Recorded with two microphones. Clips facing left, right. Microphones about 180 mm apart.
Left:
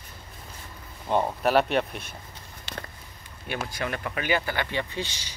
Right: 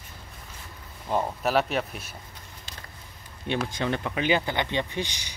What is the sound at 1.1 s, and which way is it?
Speech, centre (ahead or behind).